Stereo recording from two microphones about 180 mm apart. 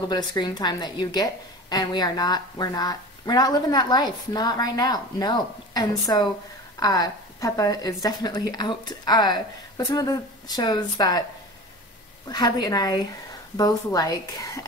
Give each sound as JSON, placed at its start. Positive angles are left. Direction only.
{"t": 0.1, "sound": "a woman's voice", "side_deg": 25}
{"t": 12.3, "sound": "a woman's voice", "side_deg": 20}